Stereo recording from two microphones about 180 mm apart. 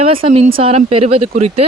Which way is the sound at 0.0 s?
30° right (ahead or behind).